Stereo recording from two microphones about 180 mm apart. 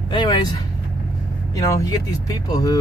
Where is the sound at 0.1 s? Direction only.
25° left (ahead or behind).